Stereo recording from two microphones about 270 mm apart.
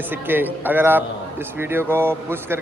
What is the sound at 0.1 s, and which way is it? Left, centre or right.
Speech, centre.